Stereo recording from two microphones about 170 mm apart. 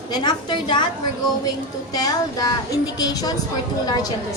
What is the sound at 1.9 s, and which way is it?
Speech, 20° left (ahead or behind).